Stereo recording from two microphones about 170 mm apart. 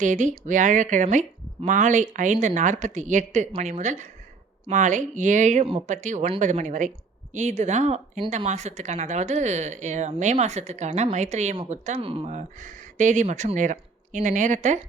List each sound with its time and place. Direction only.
0.0 s speech: 45° right (ahead or behind)